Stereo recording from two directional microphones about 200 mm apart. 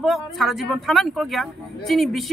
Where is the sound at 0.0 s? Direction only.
Centre (ahead or behind).